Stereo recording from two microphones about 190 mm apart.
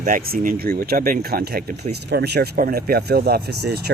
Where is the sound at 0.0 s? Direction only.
45° right (ahead or behind).